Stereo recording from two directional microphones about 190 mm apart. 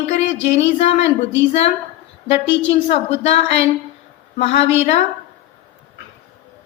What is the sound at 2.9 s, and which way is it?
A woman's voice, 30° left (ahead or behind).